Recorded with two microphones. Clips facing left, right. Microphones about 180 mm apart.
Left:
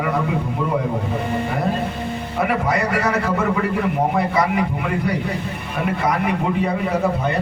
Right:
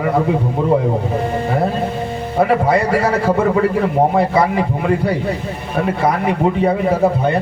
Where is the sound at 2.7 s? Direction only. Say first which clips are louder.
Right 5 dB; 30° right (ahead or behind).